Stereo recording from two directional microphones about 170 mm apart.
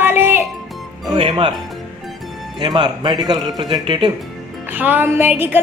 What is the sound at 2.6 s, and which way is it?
Speech, 25° right (ahead or behind).